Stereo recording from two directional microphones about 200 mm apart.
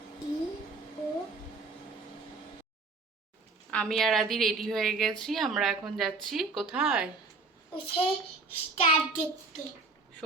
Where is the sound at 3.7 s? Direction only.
5° left (ahead or behind).